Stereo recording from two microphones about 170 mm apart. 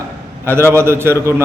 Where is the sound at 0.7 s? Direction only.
15° right (ahead or behind).